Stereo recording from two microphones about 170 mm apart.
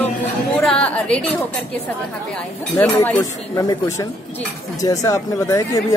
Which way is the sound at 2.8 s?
15° left (ahead or behind).